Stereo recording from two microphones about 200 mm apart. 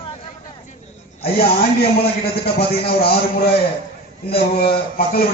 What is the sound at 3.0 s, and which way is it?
Speech, 50° left (ahead or behind).